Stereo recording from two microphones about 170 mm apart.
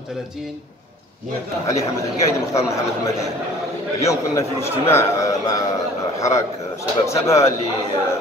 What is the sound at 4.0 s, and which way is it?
A man's voice, 15° left (ahead or behind).